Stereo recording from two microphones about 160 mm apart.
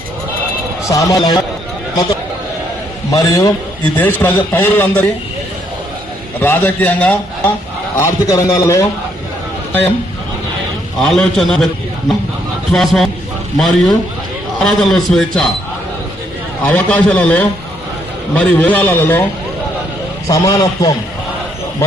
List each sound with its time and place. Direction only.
0.9 s a man's voice: 20° left (ahead or behind)
3.1 s a man's voice: 20° left (ahead or behind)
6.4 s a man's voice: 10° left (ahead or behind)
11.0 s a man's voice: centre (ahead or behind)
12.7 s a man's voice: centre (ahead or behind)
16.6 s a man's voice: 10° left (ahead or behind)